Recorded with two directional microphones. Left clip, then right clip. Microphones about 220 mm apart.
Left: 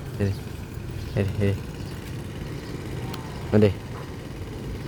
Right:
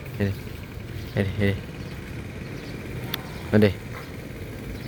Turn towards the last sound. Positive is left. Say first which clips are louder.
# even
turn(degrees=0)  # may be behind; listen again after turning